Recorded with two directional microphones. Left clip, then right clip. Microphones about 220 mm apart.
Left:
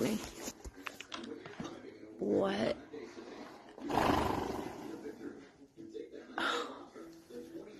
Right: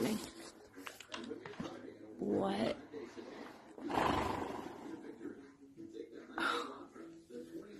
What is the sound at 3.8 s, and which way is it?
Roar, 45° left (ahead or behind).